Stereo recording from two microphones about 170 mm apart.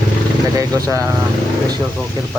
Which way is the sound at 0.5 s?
20° right (ahead or behind).